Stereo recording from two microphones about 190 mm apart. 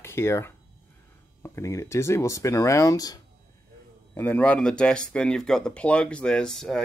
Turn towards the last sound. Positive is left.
turn(degrees=0)  # may be behind; listen again after turning